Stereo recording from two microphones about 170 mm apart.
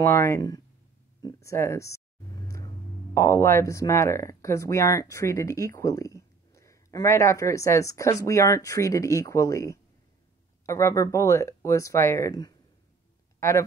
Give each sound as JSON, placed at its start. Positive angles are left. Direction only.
{"t": 0.0, "sound": "speech", "side_deg": 15}
{"t": 1.2, "sound": "a sound", "side_deg": 15}
{"t": 3.2, "sound": "speech", "side_deg": 15}